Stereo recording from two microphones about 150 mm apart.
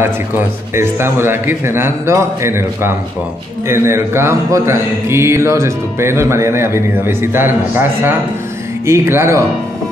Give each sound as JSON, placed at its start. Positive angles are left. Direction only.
{"t": 0.7, "sound": "speech", "side_deg": -15}